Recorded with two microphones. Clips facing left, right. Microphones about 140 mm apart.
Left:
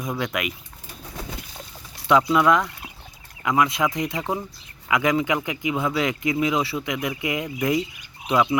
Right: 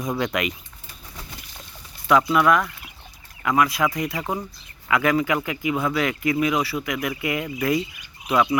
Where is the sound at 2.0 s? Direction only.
20° left (ahead or behind).